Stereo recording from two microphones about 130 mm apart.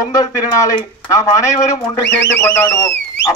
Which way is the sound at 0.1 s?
30° left (ahead or behind).